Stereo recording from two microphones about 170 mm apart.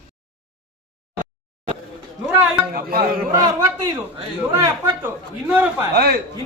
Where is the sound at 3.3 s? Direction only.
20° right (ahead or behind).